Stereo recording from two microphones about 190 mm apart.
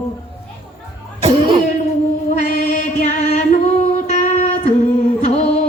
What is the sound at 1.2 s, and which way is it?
Cough, 25° right (ahead or behind).